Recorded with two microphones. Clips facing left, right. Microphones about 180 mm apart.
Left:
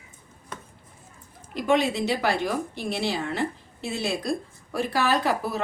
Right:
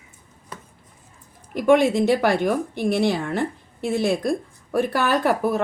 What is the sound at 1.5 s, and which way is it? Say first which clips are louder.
A woman's voice: right 6 dB; 50° right (ahead or behind).